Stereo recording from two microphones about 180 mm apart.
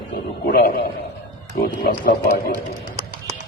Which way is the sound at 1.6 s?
55° left (ahead or behind).